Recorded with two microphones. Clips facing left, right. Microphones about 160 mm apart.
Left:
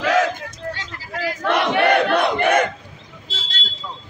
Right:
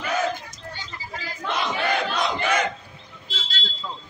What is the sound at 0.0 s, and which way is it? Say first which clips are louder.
Battle cry: left 6 dB; 90° left.